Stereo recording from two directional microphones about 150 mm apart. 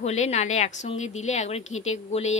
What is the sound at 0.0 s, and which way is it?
A woman's voice, 50° left (ahead or behind).